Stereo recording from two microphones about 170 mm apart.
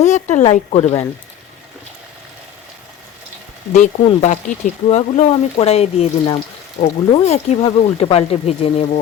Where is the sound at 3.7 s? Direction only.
45° left (ahead or behind).